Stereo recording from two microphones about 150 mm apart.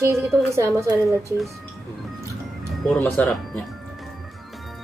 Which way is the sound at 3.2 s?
Centre (ahead or behind).